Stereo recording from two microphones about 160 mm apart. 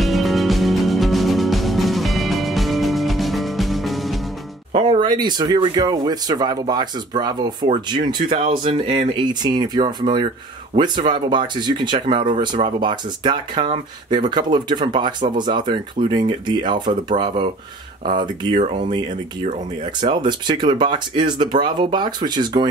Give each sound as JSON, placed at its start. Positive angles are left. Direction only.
{"t": 0.0, "sound": "music", "side_deg": 0}
{"t": 4.7, "sound": "speech", "side_deg": -30}
{"t": 18.0, "sound": "speech", "side_deg": -30}
{"t": 20.1, "sound": "speech", "side_deg": -30}